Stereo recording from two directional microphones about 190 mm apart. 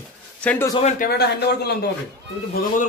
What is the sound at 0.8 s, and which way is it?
A man's voice, 45° left (ahead or behind).